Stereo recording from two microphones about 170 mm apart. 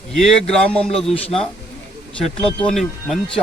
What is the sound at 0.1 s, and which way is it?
A man's voice, centre (ahead or behind).